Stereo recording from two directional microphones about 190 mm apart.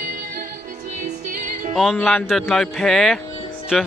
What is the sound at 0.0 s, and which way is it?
Music, 45° right (ahead or behind).